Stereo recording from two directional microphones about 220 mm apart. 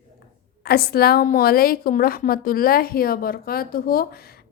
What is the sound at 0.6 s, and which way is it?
A woman's voice, 45° left (ahead or behind).